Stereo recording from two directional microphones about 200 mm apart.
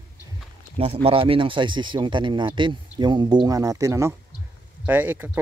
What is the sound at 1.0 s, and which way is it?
Speech, 25° right (ahead or behind).